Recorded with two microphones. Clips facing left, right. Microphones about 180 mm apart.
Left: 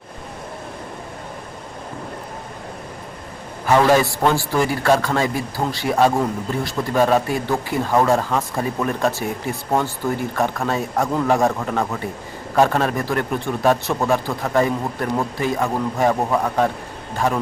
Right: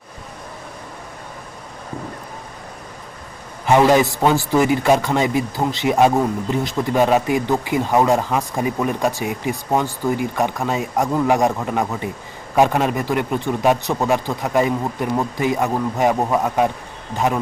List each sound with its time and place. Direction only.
3.7 s a man's voice: 15° right (ahead or behind)